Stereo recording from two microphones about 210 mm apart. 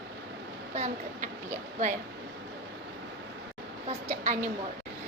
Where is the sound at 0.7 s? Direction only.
35° right (ahead or behind).